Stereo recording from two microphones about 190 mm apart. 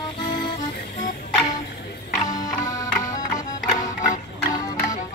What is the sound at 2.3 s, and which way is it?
Music, 20° left (ahead or behind).